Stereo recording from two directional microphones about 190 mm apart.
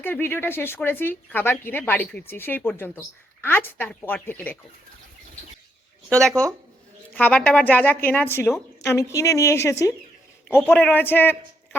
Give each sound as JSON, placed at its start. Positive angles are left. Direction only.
{"t": 0.0, "sound": "speech", "side_deg": 10}
{"t": 6.1, "sound": "speech", "side_deg": 5}